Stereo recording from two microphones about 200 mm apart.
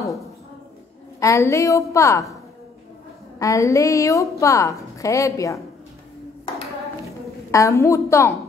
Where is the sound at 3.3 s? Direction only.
15° left (ahead or behind).